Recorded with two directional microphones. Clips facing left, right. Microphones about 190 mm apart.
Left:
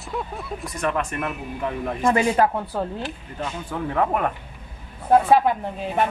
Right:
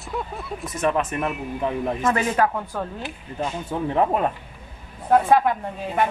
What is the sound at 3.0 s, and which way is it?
Speech, 25° right (ahead or behind).